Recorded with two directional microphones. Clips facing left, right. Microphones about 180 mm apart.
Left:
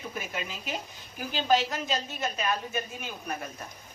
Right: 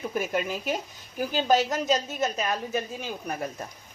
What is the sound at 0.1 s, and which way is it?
A woman's voice, 45° right (ahead or behind).